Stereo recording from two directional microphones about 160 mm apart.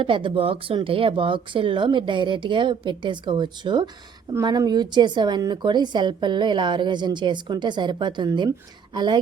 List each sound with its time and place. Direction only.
0.0 s a woman's voice: 30° right (ahead or behind)